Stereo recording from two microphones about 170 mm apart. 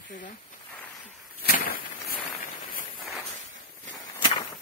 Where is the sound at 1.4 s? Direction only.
60° left (ahead or behind).